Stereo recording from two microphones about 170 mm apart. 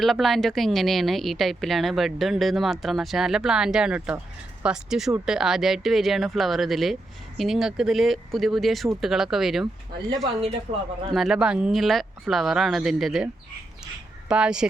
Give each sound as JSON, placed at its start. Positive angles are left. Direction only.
{"t": 0.0, "sound": "speech", "side_deg": 0}
{"t": 10.7, "sound": "a man's voice", "side_deg": -40}
{"t": 11.1, "sound": "speech", "side_deg": 0}
{"t": 14.3, "sound": "speech", "side_deg": -5}